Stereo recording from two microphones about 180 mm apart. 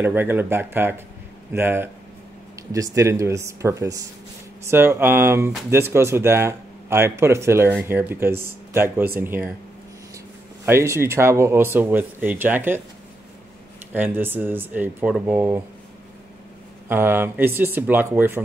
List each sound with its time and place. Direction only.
0.0 s speech: 10° right (ahead or behind)
10.6 s speech: 15° right (ahead or behind)
13.9 s speech: 10° right (ahead or behind)
16.9 s speech: 10° right (ahead or behind)